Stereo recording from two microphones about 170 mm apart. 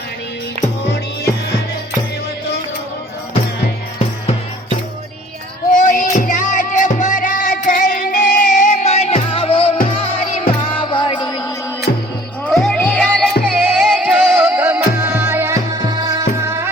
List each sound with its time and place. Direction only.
5.7 s music: 50° left (ahead or behind); by 11.5 s 20° left (ahead or behind)
11.9 s music: 55° left (ahead or behind)
12.5 s music: centre (ahead or behind); by 16.6 s 15° right (ahead or behind)